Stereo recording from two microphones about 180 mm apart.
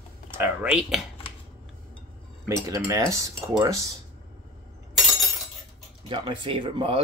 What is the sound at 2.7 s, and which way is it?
Cutlery, 20° right (ahead or behind).